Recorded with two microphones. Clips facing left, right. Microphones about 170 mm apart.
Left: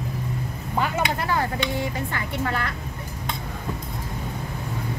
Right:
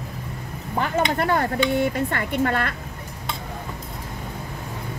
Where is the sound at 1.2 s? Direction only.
55° right (ahead or behind).